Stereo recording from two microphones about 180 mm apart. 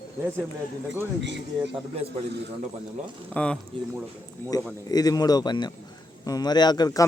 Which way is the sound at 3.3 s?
5° left (ahead or behind).